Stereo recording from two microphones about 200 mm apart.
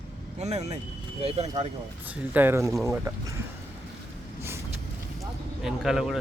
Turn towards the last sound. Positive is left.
turn(degrees=0)  # may be behind; listen again after turning